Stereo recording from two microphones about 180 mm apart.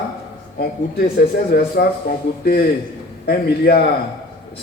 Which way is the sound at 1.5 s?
60° left (ahead or behind).